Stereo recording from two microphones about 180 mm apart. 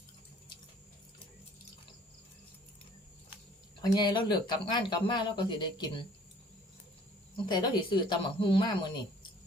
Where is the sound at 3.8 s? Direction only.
25° left (ahead or behind).